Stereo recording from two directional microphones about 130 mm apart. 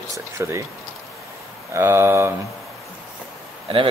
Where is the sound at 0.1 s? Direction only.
20° right (ahead or behind).